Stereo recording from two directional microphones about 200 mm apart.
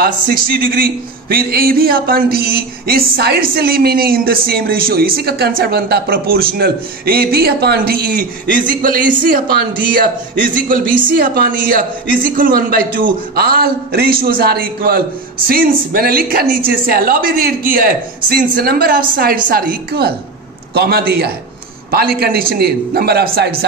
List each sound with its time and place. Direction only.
0.0 s speech: 50° right (ahead or behind)